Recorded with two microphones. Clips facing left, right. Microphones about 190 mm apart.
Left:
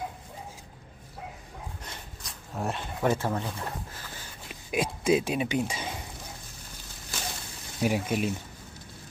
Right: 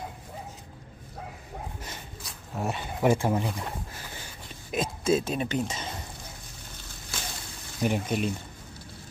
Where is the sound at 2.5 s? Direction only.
Centre (ahead or behind).